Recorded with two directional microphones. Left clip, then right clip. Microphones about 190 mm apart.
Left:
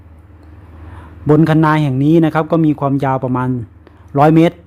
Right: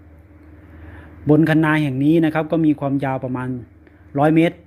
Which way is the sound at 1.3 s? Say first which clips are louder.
Left 4 dB; 15° left (ahead or behind).